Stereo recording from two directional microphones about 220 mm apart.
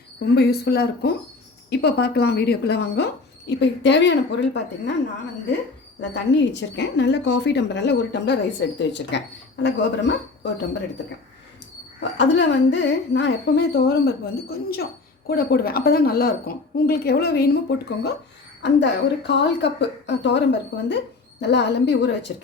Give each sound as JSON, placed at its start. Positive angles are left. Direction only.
{"t": 0.3, "sound": "speech", "side_deg": 45}
{"t": 6.0, "sound": "speech", "side_deg": 50}
{"t": 11.9, "sound": "speech", "side_deg": 50}